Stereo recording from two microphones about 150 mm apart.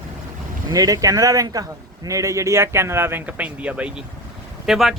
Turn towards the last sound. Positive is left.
turn(degrees=0)  # may be behind; listen again after turning